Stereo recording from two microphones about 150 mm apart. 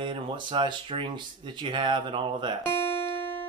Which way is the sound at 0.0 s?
30° right (ahead or behind).